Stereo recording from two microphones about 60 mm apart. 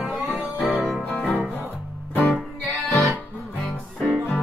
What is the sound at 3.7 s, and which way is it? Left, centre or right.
Music, centre.